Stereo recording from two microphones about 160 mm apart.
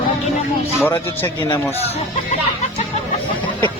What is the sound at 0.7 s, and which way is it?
Speech, 15° left (ahead or behind).